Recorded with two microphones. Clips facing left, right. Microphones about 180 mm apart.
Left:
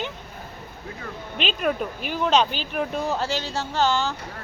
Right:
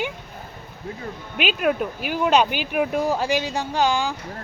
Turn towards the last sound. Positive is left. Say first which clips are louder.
# right 1 dB
turn(degrees=-10)  # may be behind; listen again after turning